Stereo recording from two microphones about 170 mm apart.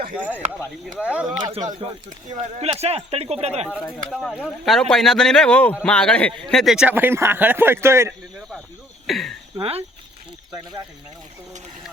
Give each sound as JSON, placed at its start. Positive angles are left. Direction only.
{"t": 0.2, "sound": "speech", "side_deg": -10}
{"t": 2.0, "sound": "speech", "side_deg": -50}
{"t": 2.7, "sound": "speech", "side_deg": -35}
{"t": 4.1, "sound": "speech", "side_deg": -5}
{"t": 8.4, "sound": "cricket", "side_deg": 0}
{"t": 9.0, "sound": "speech", "side_deg": 0}
{"t": 9.6, "sound": "speech", "side_deg": -35}